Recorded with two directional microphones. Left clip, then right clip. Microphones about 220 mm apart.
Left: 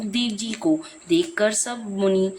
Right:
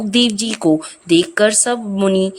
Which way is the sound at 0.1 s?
35° right (ahead or behind).